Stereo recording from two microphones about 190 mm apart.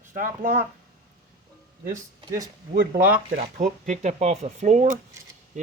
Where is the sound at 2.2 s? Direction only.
20° right (ahead or behind).